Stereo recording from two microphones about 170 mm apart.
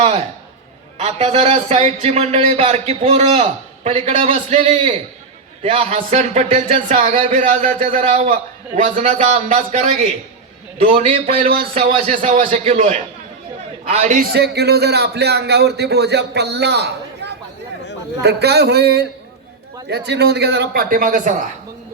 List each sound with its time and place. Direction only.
0.0 s a man's voice: 40° right (ahead or behind)
11.7 s a man's voice: 45° right (ahead or behind)
14.3 s a man's voice: 70° right (ahead or behind); by 21.4 s 50° right (ahead or behind)